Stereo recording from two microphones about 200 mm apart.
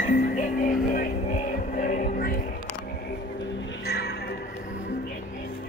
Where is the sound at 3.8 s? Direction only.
50° left (ahead or behind).